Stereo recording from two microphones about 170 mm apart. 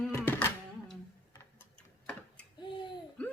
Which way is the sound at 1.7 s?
5° left (ahead or behind).